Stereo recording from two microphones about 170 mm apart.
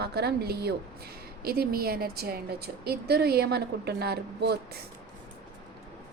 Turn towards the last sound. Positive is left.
turn(degrees=-70)  # may be behind; listen again after turning